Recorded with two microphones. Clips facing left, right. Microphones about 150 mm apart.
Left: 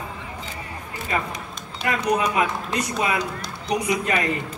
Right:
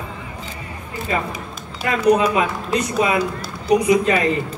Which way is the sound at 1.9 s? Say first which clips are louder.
Right 7 dB; 25° right (ahead or behind).